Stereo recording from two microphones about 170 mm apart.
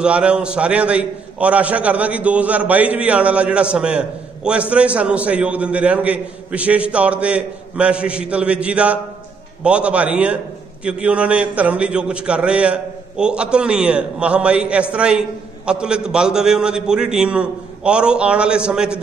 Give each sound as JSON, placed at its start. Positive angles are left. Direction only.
{"t": 0.0, "sound": "a man's voice", "side_deg": -5}